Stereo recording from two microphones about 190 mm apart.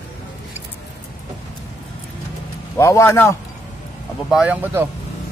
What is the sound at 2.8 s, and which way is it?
Speech, 15° left (ahead or behind).